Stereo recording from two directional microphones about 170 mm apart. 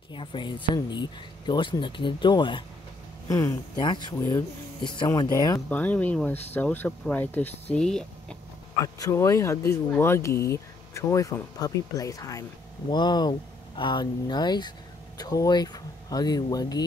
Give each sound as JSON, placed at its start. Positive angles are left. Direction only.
{"t": 0.1, "sound": "speech", "side_deg": 30}
{"t": 5.7, "sound": "speech", "side_deg": 10}
{"t": 8.8, "sound": "speech", "side_deg": 20}